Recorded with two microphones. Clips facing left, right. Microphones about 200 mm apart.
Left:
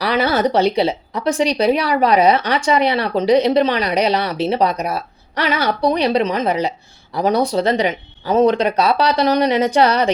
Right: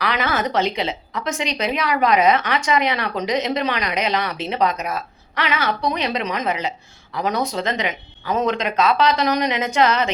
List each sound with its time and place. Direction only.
0.0 s a woman's voice: 35° left (ahead or behind)